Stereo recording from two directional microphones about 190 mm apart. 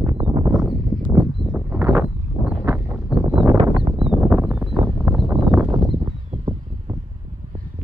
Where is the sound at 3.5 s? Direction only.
30° right (ahead or behind).